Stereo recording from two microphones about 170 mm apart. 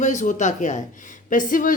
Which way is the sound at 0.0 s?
45° left (ahead or behind).